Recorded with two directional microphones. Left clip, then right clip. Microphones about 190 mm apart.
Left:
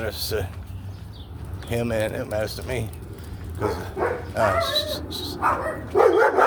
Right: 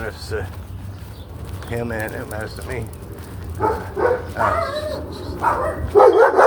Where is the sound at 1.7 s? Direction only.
40° left (ahead or behind).